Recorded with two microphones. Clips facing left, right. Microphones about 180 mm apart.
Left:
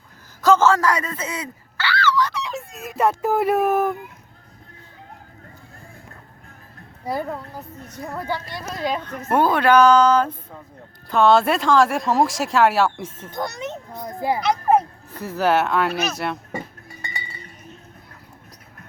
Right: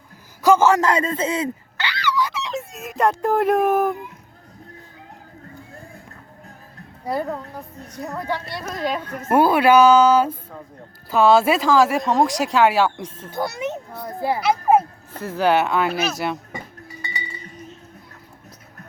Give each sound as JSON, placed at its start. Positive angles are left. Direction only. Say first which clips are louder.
{"t": 0.4, "sound": "speech", "louder": "right 1 dB", "side_deg": -15}
{"t": 7.0, "sound": "speech", "louder": "right 1 dB", "side_deg": 5}
{"t": 8.9, "sound": "speech", "louder": "right 2 dB", "side_deg": -5}
{"t": 13.3, "sound": "speech", "louder": "right 3 dB", "side_deg": -10}
{"t": 14.2, "sound": "a child's voice", "louder": "even", "side_deg": 15}
{"t": 14.4, "sound": "a child's voice", "louder": "right 2 dB", "side_deg": -5}
{"t": 15.2, "sound": "speech", "louder": "right 1 dB", "side_deg": 5}